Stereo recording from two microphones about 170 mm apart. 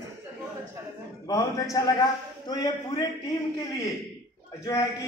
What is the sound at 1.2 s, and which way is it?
A man's voice, 20° left (ahead or behind).